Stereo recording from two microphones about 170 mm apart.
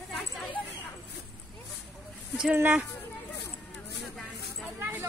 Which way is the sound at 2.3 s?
10° right (ahead or behind).